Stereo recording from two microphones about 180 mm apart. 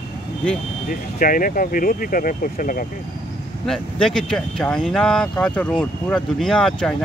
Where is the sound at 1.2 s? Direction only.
50° left (ahead or behind).